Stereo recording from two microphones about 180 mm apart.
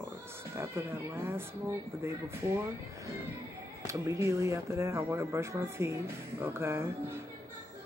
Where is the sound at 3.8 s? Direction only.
15° right (ahead or behind).